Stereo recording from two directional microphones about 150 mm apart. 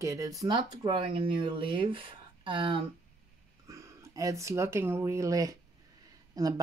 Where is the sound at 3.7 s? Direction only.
20° right (ahead or behind).